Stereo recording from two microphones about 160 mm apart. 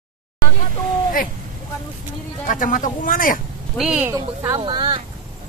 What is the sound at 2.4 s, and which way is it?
Speech, 55° left (ahead or behind).